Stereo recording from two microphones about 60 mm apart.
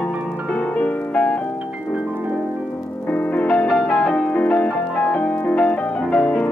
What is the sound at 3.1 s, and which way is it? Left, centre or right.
Music, left.